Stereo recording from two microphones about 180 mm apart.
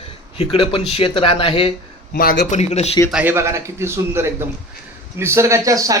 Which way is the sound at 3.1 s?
10° right (ahead or behind).